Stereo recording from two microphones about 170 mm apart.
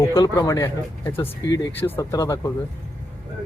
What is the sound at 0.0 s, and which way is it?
Speech, 20° left (ahead or behind).